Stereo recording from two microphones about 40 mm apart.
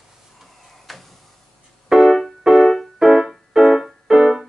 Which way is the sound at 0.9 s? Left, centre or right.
Centre.